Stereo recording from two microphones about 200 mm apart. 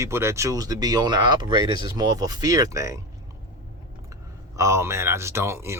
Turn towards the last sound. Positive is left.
turn(degrees=-15)  # may be behind; listen again after turning